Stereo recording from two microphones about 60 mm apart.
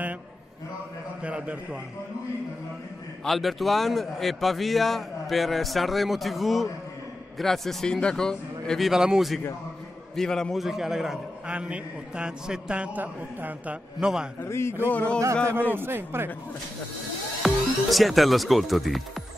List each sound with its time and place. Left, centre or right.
1.2 s a man's voice: right
3.3 s a man's voice: centre
8.8 s a man's voice: centre
10.1 s a man's voice: centre
10.6 s a man's voice: centre; by 13.7 s right
14.4 s a man's voice: left
14.9 s speech: left
15.7 s a man's voice: right
17.4 s speech: centre